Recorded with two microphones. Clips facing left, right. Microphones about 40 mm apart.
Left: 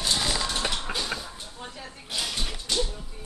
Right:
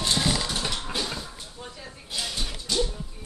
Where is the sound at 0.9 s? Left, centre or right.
Left.